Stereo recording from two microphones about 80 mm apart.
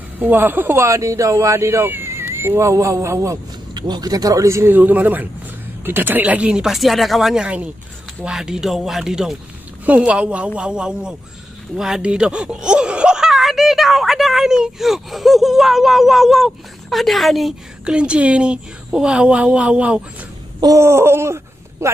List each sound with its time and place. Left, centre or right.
0.2 s speech: right
0.8 s speech: right
3.7 s speech: right
4.7 s speech: right; by 7.4 s centre
7.4 s speech: centre
17.8 s speech: centre
20.8 s speech: right